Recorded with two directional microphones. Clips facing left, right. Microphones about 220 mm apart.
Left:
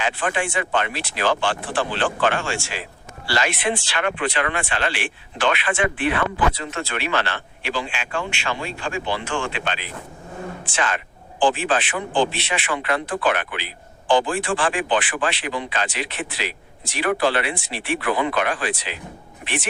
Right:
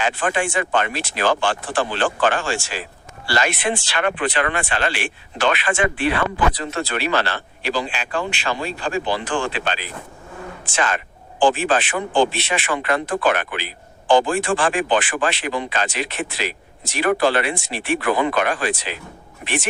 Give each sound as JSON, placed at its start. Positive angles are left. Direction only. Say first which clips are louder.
{"t": 0.0, "sound": "speech", "louder": "right 2 dB", "side_deg": -45}